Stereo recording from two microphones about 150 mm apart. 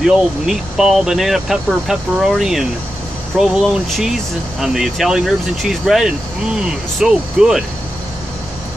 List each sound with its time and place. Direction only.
0.0 s speech: 5° right (ahead or behind)